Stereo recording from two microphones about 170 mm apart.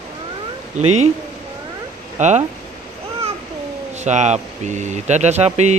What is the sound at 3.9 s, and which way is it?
Speech, 45° right (ahead or behind).